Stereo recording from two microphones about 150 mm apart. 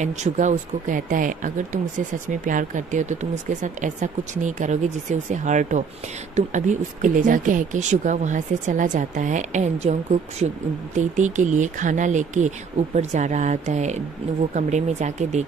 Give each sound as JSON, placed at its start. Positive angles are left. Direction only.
{"t": 0.0, "sound": "speech", "side_deg": -55}
{"t": 11.0, "sound": "speech", "side_deg": -55}